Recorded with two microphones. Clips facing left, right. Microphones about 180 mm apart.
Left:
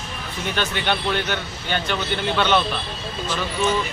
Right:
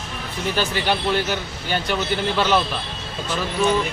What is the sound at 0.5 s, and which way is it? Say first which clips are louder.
Speech: right 1 dB; 5° right (ahead or behind).